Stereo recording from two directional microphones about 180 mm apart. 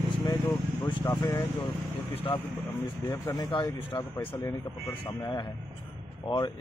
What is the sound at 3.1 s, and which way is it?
Speech, 20° left (ahead or behind).